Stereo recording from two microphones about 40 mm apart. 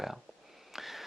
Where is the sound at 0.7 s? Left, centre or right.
Centre.